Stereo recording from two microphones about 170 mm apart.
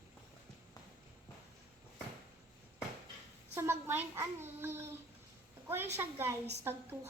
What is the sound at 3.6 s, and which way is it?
A child's voice, 15° right (ahead or behind).